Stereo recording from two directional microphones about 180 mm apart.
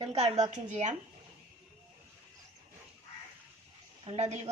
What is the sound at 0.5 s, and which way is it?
Speech, 40° right (ahead or behind).